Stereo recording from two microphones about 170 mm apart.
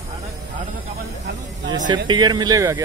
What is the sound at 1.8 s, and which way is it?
Speech, 25° right (ahead or behind).